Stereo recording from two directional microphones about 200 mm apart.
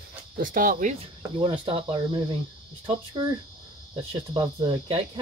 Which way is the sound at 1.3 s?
25° right (ahead or behind).